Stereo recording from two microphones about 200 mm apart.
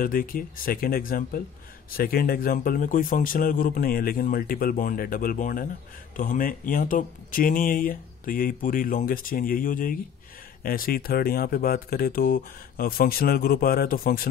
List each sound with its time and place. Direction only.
0.0 s a man's voice: 45° left (ahead or behind)